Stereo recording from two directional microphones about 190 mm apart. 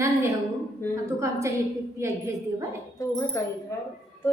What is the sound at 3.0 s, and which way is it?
Speech, 15° left (ahead or behind).